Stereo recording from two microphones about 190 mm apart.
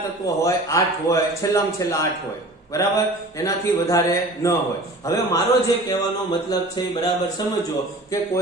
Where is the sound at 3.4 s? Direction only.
15° left (ahead or behind).